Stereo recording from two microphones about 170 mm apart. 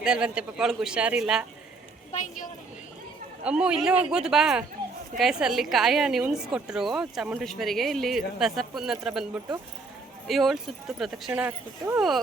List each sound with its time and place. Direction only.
0.0 s speech: 5° right (ahead or behind)
2.1 s a woman's voice: 45° left (ahead or behind)
3.4 s speech: 5° right (ahead or behind)